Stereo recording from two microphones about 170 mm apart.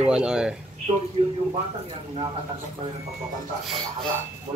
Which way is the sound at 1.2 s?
35° right (ahead or behind).